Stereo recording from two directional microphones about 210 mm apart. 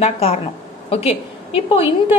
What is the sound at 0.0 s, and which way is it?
A woman's voice, 30° left (ahead or behind).